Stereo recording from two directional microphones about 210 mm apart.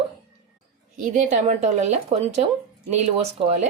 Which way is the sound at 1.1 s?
35° right (ahead or behind).